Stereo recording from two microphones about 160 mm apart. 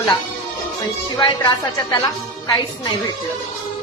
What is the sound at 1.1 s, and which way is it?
Music, 30° left (ahead or behind).